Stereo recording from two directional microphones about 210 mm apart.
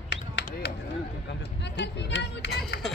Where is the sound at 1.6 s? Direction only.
55° left (ahead or behind).